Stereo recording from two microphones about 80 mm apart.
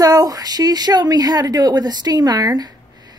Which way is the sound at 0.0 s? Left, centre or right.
Right.